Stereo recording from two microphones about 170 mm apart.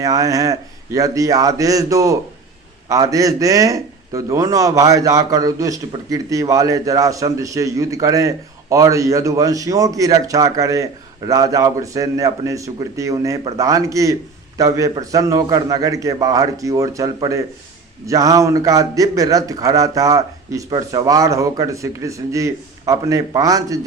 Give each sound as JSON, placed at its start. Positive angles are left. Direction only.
{"t": 0.0, "sound": "a man's voice", "side_deg": -20}